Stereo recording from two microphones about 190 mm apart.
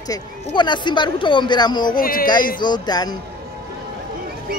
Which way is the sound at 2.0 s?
50° left (ahead or behind).